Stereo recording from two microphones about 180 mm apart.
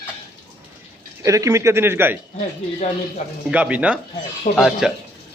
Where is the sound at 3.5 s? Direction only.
10° right (ahead or behind).